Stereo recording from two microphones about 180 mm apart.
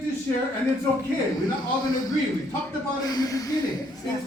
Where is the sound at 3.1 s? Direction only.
20° left (ahead or behind).